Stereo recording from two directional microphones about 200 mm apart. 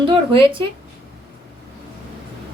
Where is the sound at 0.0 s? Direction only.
25° right (ahead or behind).